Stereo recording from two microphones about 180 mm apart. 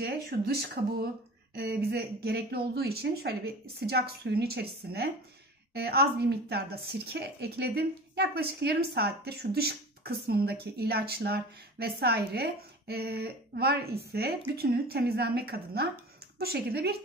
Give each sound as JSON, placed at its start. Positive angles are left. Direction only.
{"t": 0.0, "sound": "speech", "side_deg": -60}